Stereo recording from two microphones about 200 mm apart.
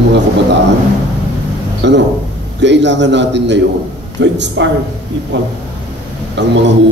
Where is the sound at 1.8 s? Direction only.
60° right (ahead or behind).